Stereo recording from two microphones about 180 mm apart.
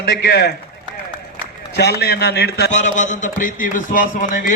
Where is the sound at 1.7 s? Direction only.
65° left (ahead or behind).